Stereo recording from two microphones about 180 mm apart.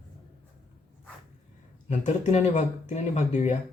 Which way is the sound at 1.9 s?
40° left (ahead or behind).